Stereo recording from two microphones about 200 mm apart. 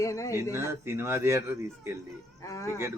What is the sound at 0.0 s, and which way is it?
Speech, 15° left (ahead or behind).